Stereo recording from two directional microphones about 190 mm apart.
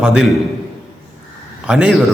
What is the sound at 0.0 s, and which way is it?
Speech, 5° right (ahead or behind).